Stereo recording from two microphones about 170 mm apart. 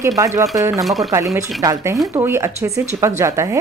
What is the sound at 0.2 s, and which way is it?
Speech, 20° right (ahead or behind).